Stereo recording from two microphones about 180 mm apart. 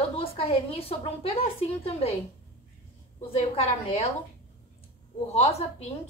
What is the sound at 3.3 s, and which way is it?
Speech, 35° left (ahead or behind).